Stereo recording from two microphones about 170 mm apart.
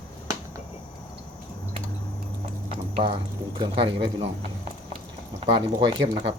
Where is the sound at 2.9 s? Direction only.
30° right (ahead or behind).